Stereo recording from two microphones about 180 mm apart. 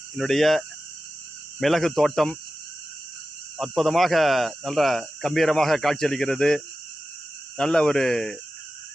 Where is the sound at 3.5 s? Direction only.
Centre (ahead or behind).